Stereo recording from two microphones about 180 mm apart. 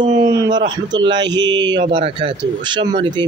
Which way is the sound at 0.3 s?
20° right (ahead or behind).